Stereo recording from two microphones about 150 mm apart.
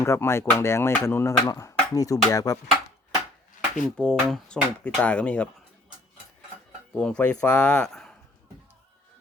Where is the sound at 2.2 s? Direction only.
25° left (ahead or behind).